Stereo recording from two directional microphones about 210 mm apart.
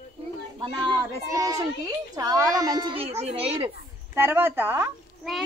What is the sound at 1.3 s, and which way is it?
A child's voice, 15° right (ahead or behind).